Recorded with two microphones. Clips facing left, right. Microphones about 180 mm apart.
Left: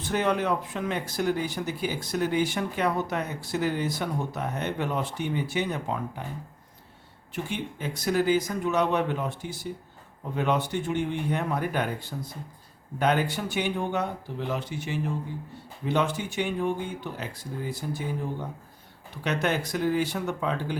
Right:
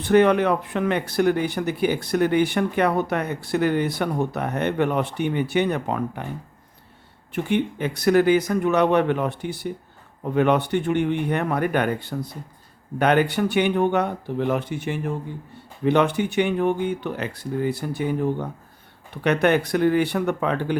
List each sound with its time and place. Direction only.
0.0 s speech: 65° right (ahead or behind)
7.3 s speech: 60° right (ahead or behind)